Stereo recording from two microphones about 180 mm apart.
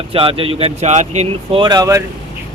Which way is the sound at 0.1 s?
30° right (ahead or behind).